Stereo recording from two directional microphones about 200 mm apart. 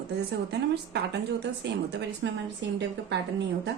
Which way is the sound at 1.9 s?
60° right (ahead or behind).